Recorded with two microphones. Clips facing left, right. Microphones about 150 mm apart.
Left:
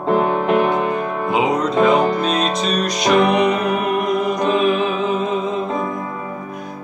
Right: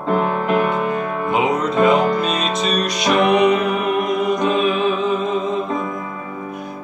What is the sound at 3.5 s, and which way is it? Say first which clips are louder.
Music: right 1 dB; 40° left (ahead or behind).